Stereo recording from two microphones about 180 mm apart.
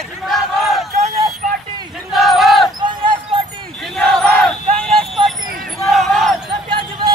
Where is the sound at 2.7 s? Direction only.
25° right (ahead or behind).